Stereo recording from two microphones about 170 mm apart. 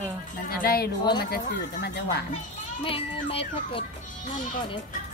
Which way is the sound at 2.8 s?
35° left (ahead or behind).